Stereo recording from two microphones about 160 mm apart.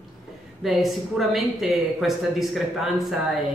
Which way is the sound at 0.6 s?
Centre (ahead or behind).